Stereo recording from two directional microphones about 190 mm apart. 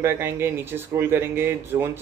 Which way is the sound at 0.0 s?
10° right (ahead or behind).